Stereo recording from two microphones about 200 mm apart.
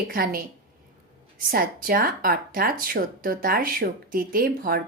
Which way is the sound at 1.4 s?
45° right (ahead or behind).